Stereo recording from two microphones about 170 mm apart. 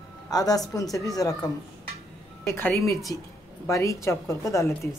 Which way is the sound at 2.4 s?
15° left (ahead or behind).